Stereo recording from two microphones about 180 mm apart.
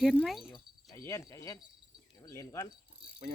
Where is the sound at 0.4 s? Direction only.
15° left (ahead or behind).